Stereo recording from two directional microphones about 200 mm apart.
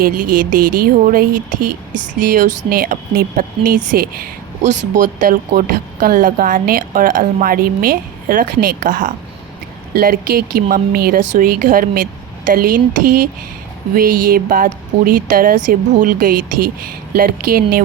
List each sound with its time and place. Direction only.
0.0 s speech: 45° right (ahead or behind)
13.9 s speech: 45° right (ahead or behind)